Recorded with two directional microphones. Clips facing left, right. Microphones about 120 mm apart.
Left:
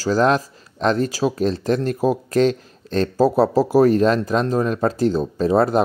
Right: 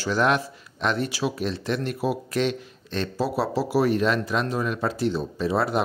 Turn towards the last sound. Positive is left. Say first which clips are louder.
# left 7 dB
turn(degrees=45)  # may be behind; listen again after turning